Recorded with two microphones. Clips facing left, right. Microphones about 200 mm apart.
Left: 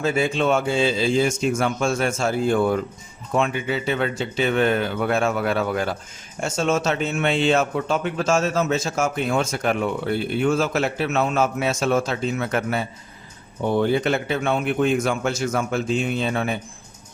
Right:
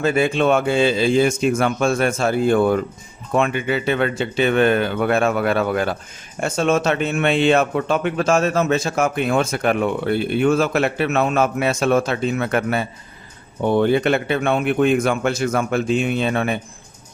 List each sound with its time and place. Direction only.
0.0 s speech: 60° right (ahead or behind)